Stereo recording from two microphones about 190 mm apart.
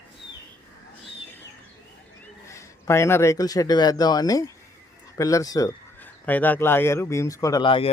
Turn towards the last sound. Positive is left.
turn(degrees=25)  # may be behind; listen again after turning